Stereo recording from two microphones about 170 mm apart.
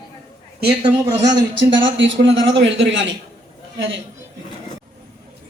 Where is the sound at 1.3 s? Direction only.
90° right.